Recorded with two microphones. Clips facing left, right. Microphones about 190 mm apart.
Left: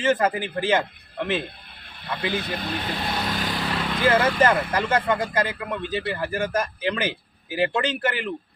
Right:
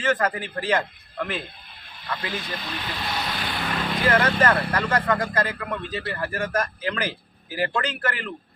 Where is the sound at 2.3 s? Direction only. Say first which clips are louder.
Left 4 dB; 60° left (ahead or behind).